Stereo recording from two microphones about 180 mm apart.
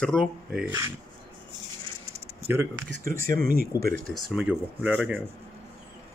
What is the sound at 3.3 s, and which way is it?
Speech, 55° right (ahead or behind).